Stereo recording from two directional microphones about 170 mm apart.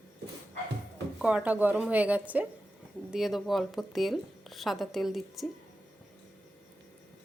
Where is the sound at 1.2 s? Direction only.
5° right (ahead or behind).